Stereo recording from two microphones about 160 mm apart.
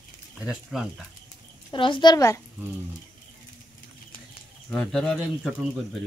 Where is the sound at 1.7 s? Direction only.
30° left (ahead or behind).